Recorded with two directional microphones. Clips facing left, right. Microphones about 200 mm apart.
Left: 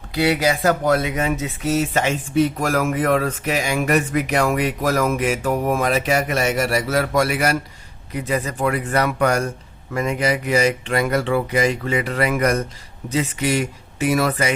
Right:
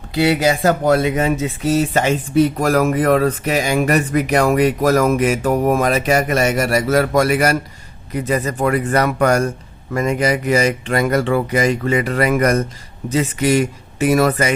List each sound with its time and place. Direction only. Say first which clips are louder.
0.1 s speech: right 3 dB; 25° right (ahead or behind); by 14.5 s 45° right (ahead or behind)